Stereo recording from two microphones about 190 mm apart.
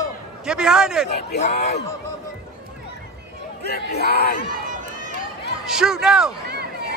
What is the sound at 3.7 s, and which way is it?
Crowd, 55° left (ahead or behind).